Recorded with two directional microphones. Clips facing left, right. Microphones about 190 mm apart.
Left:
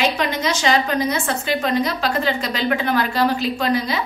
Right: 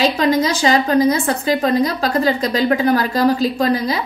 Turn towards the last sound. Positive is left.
turn(degrees=-40)  # may be behind; listen again after turning